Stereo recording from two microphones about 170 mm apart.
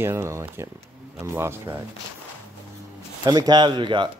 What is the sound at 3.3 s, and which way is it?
Speech, 25° right (ahead or behind).